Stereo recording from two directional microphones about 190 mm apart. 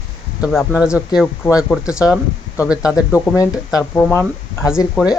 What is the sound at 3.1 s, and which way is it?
Speech, 15° left (ahead or behind).